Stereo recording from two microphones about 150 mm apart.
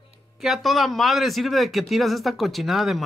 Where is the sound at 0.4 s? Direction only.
Centre (ahead or behind).